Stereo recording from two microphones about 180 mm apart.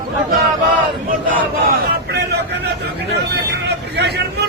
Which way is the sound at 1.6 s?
60° right (ahead or behind).